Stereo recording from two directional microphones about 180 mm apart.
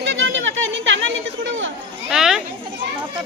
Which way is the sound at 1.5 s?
90° right.